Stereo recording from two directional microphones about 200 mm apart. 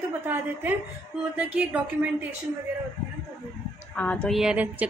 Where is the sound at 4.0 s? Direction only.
5° left (ahead or behind).